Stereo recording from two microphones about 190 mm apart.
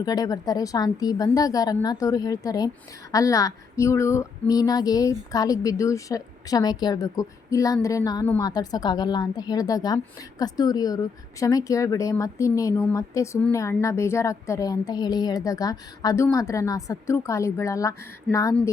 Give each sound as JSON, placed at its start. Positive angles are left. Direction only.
{"t": 0.0, "sound": "a woman's voice", "side_deg": 20}